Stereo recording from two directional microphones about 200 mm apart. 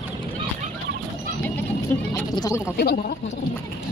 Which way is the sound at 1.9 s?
10° left (ahead or behind).